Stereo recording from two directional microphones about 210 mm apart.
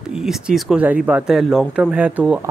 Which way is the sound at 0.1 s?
5° right (ahead or behind).